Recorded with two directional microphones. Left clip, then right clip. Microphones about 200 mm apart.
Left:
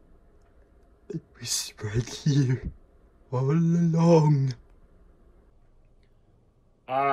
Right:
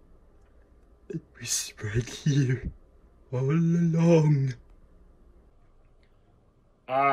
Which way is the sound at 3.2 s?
10° left (ahead or behind).